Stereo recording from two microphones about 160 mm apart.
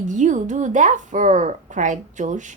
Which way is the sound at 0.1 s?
50° right (ahead or behind).